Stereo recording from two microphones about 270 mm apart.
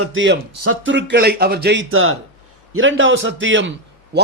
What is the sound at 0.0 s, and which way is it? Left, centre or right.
Speech, right.